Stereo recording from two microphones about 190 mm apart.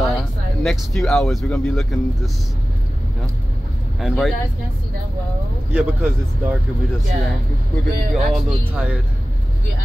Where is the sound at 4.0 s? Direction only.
Centre (ahead or behind).